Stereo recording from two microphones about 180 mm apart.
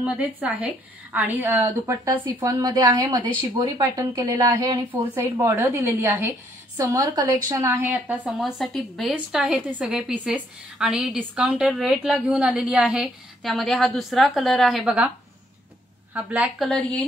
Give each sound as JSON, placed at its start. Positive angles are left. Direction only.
{"t": 0.0, "sound": "a woman's voice", "side_deg": -5}